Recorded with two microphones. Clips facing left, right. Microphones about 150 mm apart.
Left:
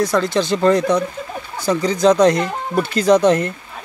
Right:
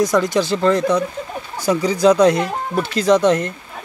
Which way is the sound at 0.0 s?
15° right (ahead or behind).